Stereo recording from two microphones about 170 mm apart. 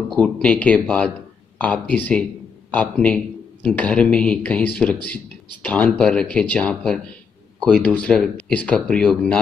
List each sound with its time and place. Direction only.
0.1 s speech: 5° left (ahead or behind)